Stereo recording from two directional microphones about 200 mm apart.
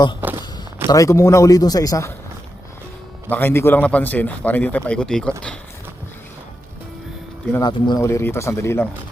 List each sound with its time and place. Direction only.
0.9 s a man's voice: 15° left (ahead or behind)
3.2 s a man's voice: 10° left (ahead or behind)
7.5 s a man's voice: 20° left (ahead or behind)